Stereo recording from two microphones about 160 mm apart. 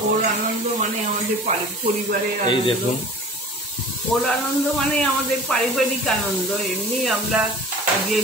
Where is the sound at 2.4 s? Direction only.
30° left (ahead or behind).